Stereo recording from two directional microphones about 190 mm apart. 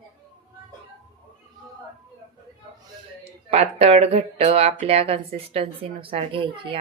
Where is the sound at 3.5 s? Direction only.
35° right (ahead or behind).